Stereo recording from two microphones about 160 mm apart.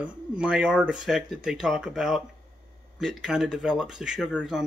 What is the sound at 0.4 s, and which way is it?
Speech, 5° right (ahead or behind).